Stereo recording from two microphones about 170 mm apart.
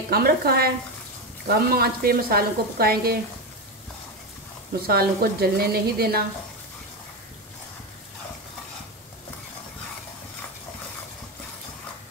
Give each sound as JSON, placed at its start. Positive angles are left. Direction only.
{"t": 0.1, "sound": "speech", "side_deg": -65}
{"t": 4.8, "sound": "speech", "side_deg": -65}